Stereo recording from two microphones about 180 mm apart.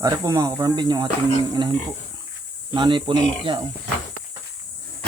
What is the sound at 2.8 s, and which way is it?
Speech, 25° right (ahead or behind).